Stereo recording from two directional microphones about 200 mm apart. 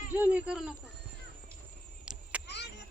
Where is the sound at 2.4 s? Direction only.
55° left (ahead or behind).